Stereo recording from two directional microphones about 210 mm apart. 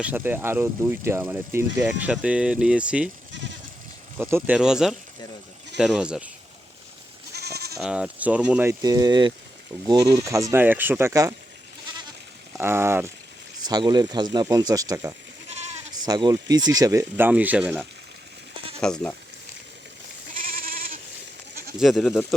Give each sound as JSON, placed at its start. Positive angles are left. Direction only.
{"t": 0.0, "sound": "speech", "side_deg": -10}
{"t": 3.3, "sound": "goat", "side_deg": -60}
{"t": 4.2, "sound": "speech", "side_deg": -10}
{"t": 7.3, "sound": "goat", "side_deg": -50}
{"t": 7.8, "sound": "speech", "side_deg": -5}
{"t": 8.8, "sound": "speech", "side_deg": -20}
{"t": 12.5, "sound": "speech", "side_deg": -10}
{"t": 20.4, "sound": "goat", "side_deg": -45}
{"t": 21.8, "sound": "speech", "side_deg": 0}